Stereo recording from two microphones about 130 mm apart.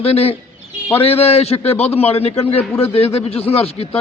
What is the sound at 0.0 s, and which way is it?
A man's voice, 50° left (ahead or behind).